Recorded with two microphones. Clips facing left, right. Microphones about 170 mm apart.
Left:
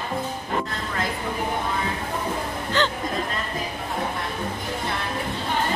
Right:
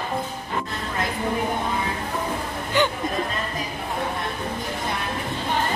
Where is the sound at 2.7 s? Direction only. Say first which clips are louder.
Right 2 dB; 15° right (ahead or behind).